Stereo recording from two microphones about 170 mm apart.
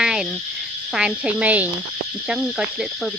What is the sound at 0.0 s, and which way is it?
Frog, 5° right (ahead or behind).